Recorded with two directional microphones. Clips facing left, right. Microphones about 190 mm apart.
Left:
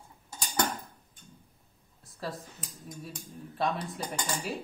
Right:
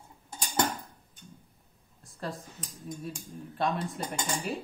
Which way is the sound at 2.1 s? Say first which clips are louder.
Even; centre (ahead or behind).